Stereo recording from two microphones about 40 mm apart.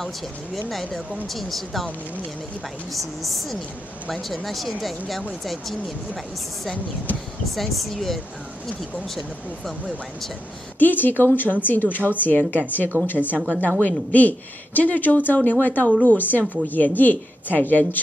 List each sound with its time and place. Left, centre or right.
0.7 s speech: centre
2.9 s speech: centre
7.5 s speech: centre
10.8 s a man's voice: left
13.6 s a man's voice: left